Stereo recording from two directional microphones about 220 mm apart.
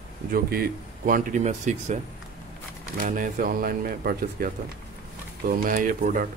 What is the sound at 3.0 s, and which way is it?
Speech, 35° right (ahead or behind).